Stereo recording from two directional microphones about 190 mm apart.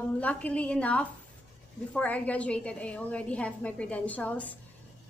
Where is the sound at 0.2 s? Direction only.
5° left (ahead or behind).